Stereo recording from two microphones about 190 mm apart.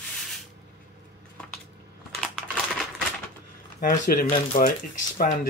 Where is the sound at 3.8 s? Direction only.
45° left (ahead or behind).